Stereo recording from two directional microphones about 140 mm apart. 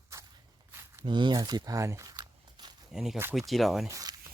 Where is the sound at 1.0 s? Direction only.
35° right (ahead or behind).